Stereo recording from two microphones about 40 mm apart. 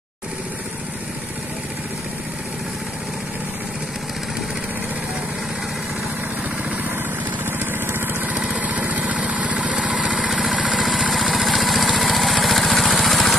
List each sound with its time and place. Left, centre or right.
7.4 s vehicle: right
8.5 s vehicle: right
10.2 s engine: centre
10.7 s vehicle: centre
11.1 s lawn mower: centre